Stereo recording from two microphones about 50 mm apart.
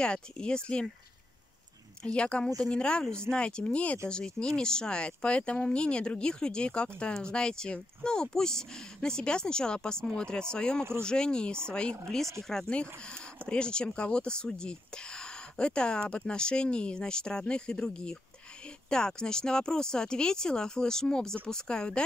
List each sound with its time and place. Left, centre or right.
0.0 s speech: centre
2.1 s speech: left